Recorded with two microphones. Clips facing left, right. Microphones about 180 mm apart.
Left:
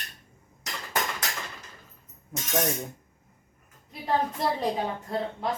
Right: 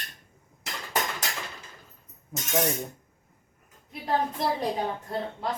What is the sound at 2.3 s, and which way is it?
Speech, centre (ahead or behind).